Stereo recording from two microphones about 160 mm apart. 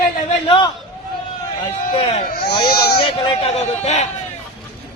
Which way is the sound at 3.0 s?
35° left (ahead or behind).